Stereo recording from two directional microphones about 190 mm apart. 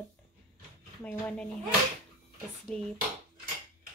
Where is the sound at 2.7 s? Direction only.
5° left (ahead or behind).